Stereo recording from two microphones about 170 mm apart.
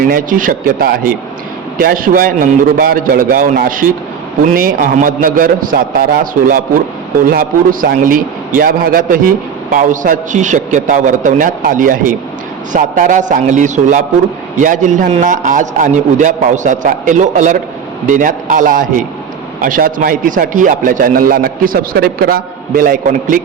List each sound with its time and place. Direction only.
0.1 s a man's voice: 55° right (ahead or behind)